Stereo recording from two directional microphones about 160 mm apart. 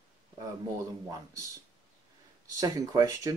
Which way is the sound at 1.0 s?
20° right (ahead or behind).